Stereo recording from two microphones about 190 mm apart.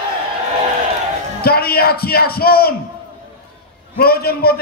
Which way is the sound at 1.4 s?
55° left (ahead or behind).